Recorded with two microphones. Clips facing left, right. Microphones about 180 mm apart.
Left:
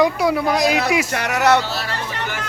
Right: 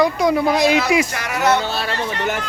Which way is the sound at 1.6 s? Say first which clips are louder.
Right 3 dB; 55° right (ahead or behind).